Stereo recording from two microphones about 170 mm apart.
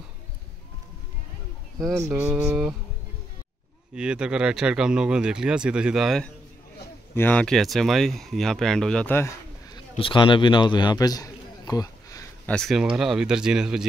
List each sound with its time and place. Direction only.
2.0 s mantra: 15° right (ahead or behind)
3.9 s speech: 5° right (ahead or behind); by 9.3 s 10° left (ahead or behind)
9.8 s a man's voice: 30° left (ahead or behind)
12.4 s speech: centre (ahead or behind)